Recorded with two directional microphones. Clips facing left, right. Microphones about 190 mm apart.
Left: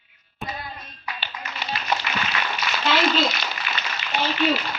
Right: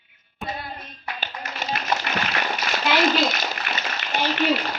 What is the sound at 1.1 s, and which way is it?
Music, 45° right (ahead or behind).